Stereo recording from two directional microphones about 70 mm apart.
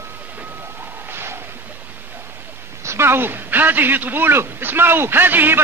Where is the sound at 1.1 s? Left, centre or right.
Right.